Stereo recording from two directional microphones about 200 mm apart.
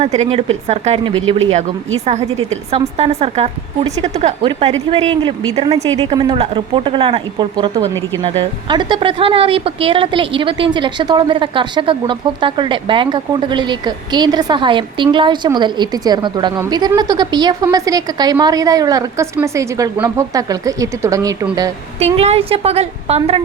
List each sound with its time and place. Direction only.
0.0 s a woman's voice: 35° right (ahead or behind); by 21.3 s 15° right (ahead or behind)
21.9 s a woman's voice: 30° right (ahead or behind)